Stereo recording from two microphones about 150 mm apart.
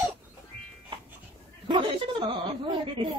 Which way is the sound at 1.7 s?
35° right (ahead or behind).